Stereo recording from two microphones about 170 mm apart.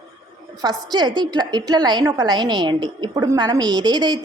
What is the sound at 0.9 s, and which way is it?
A woman's voice, 25° right (ahead or behind).